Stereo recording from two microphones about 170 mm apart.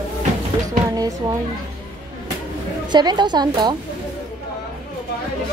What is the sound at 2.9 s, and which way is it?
Speech, 25° right (ahead or behind).